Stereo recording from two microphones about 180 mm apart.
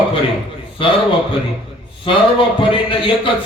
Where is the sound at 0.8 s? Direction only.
30° left (ahead or behind).